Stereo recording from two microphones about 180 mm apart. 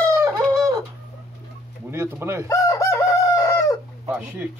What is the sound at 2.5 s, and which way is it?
Chicken, 15° left (ahead or behind).